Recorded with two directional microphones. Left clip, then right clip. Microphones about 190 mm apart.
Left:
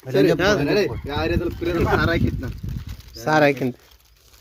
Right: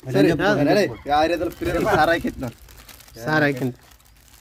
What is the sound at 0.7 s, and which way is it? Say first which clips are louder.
Speech: right 3 dB; 60° right (ahead or behind).